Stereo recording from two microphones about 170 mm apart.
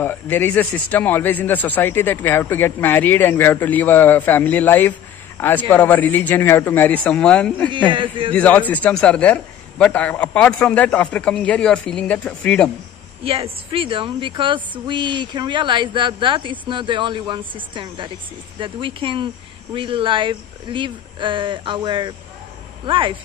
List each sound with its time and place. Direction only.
0.0 s speech: 10° left (ahead or behind)
7.9 s a woman's voice: 30° right (ahead or behind)
8.3 s speech: 10° left (ahead or behind)
13.2 s a woman's voice: 35° right (ahead or behind)